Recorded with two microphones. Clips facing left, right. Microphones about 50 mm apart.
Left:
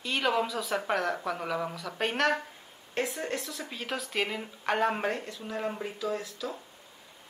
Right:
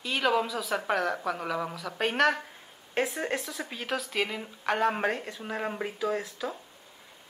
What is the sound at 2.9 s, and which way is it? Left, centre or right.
A woman's voice, centre.